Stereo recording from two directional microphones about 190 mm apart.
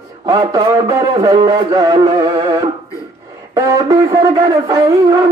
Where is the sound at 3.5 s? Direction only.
20° right (ahead or behind).